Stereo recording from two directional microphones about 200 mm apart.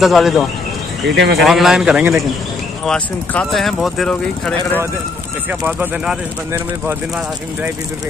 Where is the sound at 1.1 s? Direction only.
55° right (ahead or behind).